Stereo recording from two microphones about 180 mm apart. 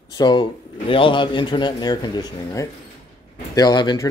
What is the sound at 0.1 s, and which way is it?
A man's voice, 25° left (ahead or behind).